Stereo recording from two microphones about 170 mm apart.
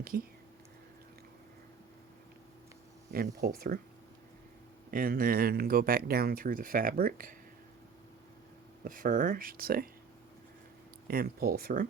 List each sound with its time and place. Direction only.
3.1 s speech: 60° right (ahead or behind)
4.9 s speech: 55° right (ahead or behind)
8.8 s speech: 50° right (ahead or behind)
11.1 s speech: 60° right (ahead or behind)